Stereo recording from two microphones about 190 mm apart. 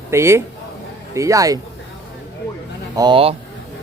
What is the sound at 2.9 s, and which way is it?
Speech, 25° right (ahead or behind).